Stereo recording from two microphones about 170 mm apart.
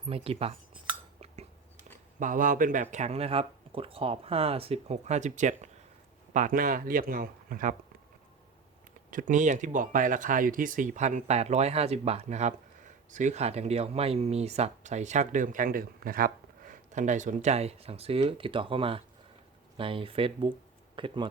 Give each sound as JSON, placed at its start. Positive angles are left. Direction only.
{"t": 0.0, "sound": "speech", "side_deg": -35}
{"t": 2.1, "sound": "speech", "side_deg": -50}
{"t": 9.0, "sound": "speech", "side_deg": -50}